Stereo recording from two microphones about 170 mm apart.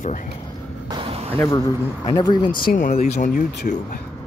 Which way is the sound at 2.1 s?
25° left (ahead or behind).